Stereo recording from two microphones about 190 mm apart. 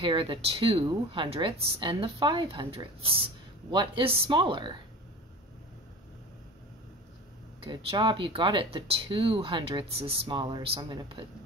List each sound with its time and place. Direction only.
0.0 s speech: 25° right (ahead or behind)
7.6 s speech: 25° right (ahead or behind)